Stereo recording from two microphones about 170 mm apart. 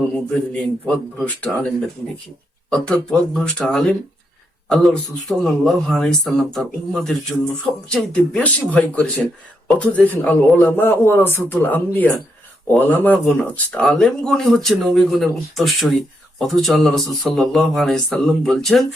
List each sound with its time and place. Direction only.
0.5 s a man's voice: 5° left (ahead or behind)
2.6 s a man's voice: 5° left (ahead or behind)